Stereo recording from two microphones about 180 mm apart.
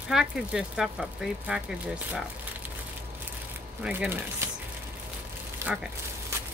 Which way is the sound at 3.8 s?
10° right (ahead or behind).